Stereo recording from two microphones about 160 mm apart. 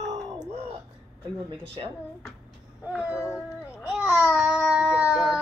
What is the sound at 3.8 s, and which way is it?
Babbling, 10° right (ahead or behind).